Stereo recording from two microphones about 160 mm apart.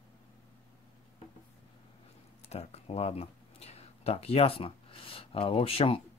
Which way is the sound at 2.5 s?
40° left (ahead or behind).